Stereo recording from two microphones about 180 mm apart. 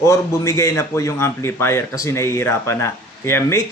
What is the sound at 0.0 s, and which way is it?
A man's voice, 15° left (ahead or behind).